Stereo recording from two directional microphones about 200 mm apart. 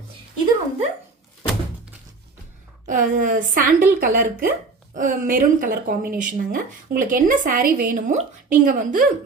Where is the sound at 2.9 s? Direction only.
40° right (ahead or behind).